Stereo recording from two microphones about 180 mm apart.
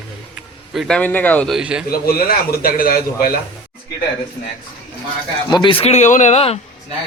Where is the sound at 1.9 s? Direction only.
55° left (ahead or behind).